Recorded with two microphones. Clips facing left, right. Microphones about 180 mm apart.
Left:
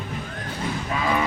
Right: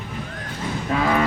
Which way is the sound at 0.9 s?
60° right (ahead or behind).